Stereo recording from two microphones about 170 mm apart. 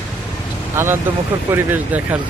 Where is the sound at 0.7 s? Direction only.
15° right (ahead or behind).